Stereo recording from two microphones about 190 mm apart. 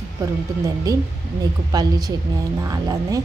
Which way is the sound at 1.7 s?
20° right (ahead or behind).